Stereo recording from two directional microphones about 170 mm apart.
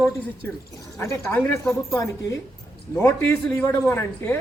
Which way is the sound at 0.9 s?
15° left (ahead or behind).